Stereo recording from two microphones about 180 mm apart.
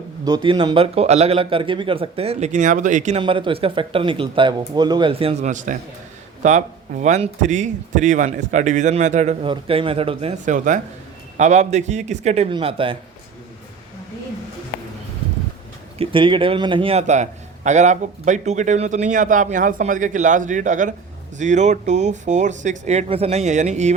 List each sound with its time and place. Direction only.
0.3 s a man's voice: 25° right (ahead or behind); by 3.2 s 45° right (ahead or behind)
3.2 s a man's voice: 30° right (ahead or behind)
16.0 s a man's voice: 30° right (ahead or behind)